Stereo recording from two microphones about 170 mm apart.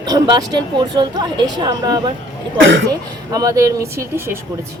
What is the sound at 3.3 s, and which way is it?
A woman's voice, 20° right (ahead or behind).